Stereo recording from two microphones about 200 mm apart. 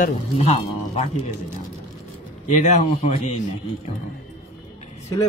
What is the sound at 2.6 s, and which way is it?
Speech, 35° left (ahead or behind).